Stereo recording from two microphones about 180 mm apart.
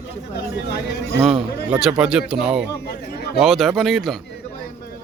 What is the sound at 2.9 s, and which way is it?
Chatter, 60° left (ahead or behind).